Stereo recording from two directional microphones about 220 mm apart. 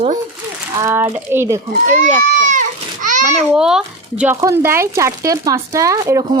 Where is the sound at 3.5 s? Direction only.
5° right (ahead or behind).